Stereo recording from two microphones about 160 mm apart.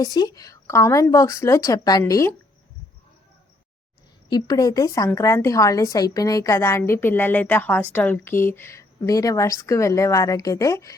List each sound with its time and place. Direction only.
0.0 s a woman's voice: 25° left (ahead or behind)
4.3 s a woman's voice: 25° left (ahead or behind)